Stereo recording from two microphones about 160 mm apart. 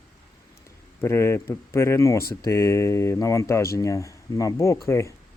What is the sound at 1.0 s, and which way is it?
Speech, 15° left (ahead or behind).